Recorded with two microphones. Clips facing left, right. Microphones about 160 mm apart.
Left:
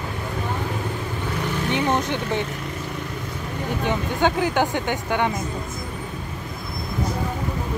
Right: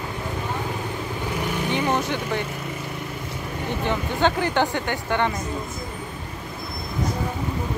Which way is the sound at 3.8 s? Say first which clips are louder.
Left 1 dB; 10° left (ahead or behind).